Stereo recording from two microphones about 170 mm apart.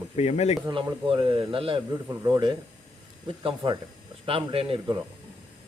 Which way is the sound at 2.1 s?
20° right (ahead or behind).